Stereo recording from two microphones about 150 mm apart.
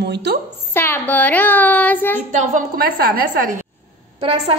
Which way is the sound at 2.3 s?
70° right (ahead or behind).